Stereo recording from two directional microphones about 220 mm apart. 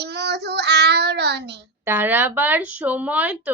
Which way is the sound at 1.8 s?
10° right (ahead or behind).